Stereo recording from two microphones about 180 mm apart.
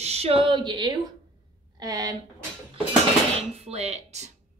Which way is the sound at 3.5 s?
35° right (ahead or behind).